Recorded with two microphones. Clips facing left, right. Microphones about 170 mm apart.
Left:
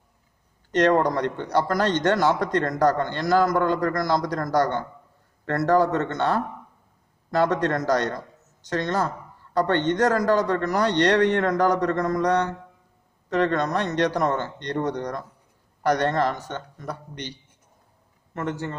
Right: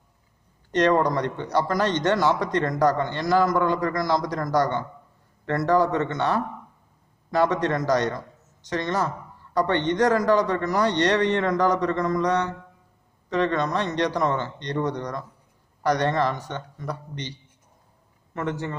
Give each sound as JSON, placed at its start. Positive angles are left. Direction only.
{"t": 0.7, "sound": "speech", "side_deg": 50}
{"t": 18.3, "sound": "a man's voice", "side_deg": 40}